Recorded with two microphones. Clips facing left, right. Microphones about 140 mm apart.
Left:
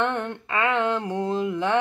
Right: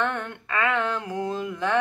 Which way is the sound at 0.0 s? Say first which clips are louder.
Left 2 dB; 25° left (ahead or behind).